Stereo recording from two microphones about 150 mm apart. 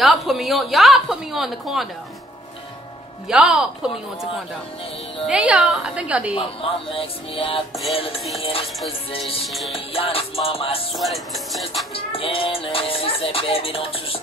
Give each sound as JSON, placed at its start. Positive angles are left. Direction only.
{"t": 0.0, "sound": "a woman's voice", "side_deg": 0}
{"t": 3.3, "sound": "music", "side_deg": -5}
{"t": 5.2, "sound": "a woman's voice", "side_deg": -5}
{"t": 6.3, "sound": "music", "side_deg": 35}
{"t": 9.5, "sound": "music", "side_deg": 0}
{"t": 9.9, "sound": "music", "side_deg": 40}
{"t": 11.0, "sound": "music", "side_deg": 0}
{"t": 11.9, "sound": "music", "side_deg": 40}